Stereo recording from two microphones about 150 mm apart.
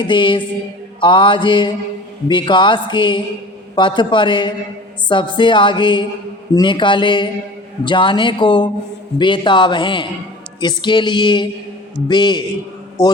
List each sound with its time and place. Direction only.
0.0 s a woman's voice: 30° left (ahead or behind)